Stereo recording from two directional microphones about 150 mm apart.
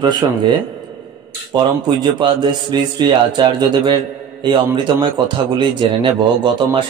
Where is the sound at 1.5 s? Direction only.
30° right (ahead or behind).